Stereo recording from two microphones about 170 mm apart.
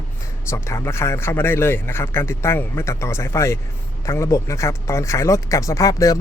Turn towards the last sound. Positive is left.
turn(degrees=20)  # may be behind; listen again after turning